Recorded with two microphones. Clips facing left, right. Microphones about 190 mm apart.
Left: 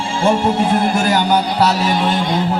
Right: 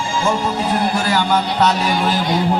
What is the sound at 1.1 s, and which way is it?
A man's voice, 10° left (ahead or behind).